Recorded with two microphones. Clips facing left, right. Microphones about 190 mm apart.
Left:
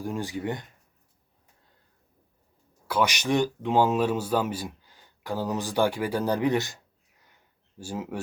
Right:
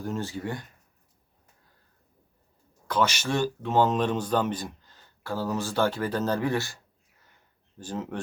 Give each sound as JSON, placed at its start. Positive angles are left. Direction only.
{"t": 0.0, "sound": "speech", "side_deg": 15}
{"t": 2.8, "sound": "speech", "side_deg": 10}
{"t": 7.8, "sound": "speech", "side_deg": 10}